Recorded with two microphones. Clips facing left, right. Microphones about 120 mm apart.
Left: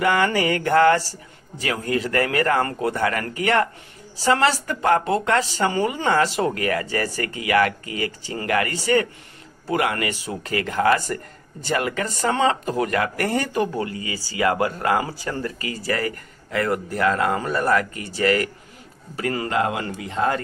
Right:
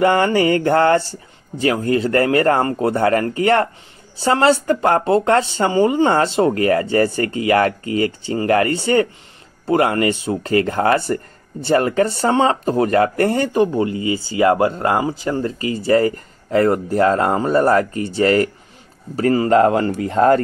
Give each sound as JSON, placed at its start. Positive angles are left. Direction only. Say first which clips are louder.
{"t": 0.0, "sound": "speech", "louder": "right 5 dB", "side_deg": -30}